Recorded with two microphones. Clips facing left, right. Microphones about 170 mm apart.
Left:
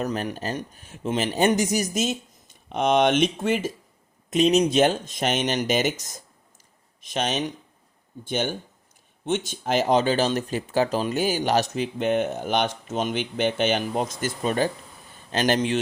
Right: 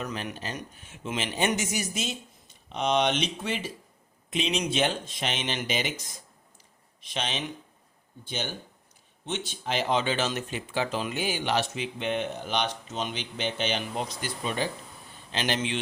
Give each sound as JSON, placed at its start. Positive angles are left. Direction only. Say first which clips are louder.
{"t": 0.0, "sound": "speech", "louder": "left 7 dB", "side_deg": 40}